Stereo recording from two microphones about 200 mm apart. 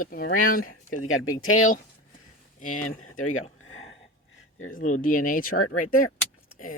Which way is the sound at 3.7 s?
80° left.